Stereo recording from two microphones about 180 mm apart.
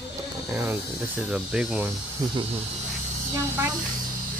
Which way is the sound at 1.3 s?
5° right (ahead or behind).